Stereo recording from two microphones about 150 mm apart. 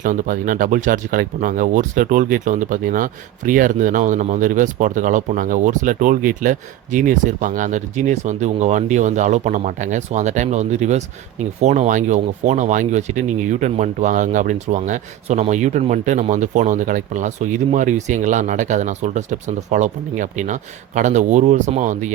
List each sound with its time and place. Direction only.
0.0 s speech: 60° right (ahead or behind)